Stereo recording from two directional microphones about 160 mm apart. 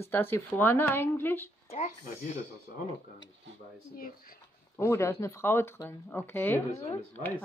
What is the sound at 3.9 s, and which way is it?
Speech, 65° left (ahead or behind).